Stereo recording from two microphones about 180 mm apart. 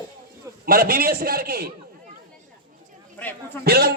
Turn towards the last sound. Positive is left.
turn(degrees=-60)  # may be behind; listen again after turning